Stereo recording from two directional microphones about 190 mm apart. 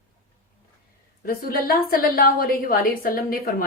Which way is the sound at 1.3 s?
50° left (ahead or behind).